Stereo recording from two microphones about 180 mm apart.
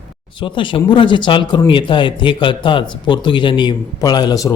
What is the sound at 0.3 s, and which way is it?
A man's voice, 25° left (ahead or behind).